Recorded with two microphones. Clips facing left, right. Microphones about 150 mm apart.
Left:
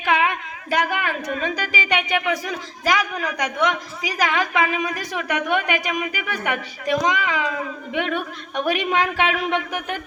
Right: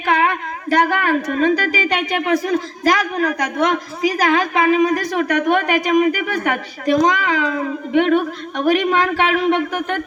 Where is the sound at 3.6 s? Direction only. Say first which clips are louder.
Right 5 dB; 35° right (ahead or behind).